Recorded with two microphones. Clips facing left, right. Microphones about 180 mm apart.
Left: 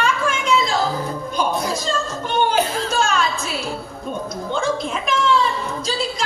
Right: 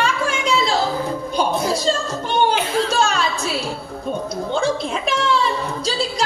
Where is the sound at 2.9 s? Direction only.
35° right (ahead or behind).